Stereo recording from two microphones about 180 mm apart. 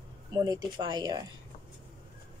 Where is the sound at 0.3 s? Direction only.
20° right (ahead or behind).